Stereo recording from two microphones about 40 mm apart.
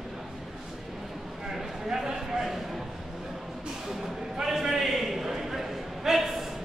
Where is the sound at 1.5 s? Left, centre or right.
Centre.